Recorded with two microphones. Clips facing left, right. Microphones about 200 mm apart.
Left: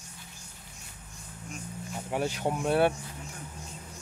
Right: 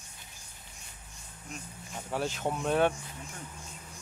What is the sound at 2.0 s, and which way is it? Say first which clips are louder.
Speech: left 2 dB; 15° left (ahead or behind).